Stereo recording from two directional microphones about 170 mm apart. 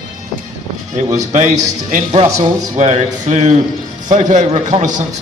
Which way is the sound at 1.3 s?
45° right (ahead or behind).